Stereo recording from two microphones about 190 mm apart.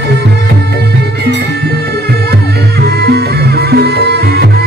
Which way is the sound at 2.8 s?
60° right (ahead or behind).